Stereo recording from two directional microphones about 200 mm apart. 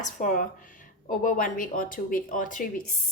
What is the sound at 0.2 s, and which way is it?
Speech, 40° left (ahead or behind).